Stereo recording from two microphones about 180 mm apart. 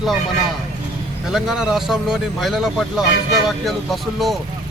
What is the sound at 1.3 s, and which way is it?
Speech, 5° right (ahead or behind).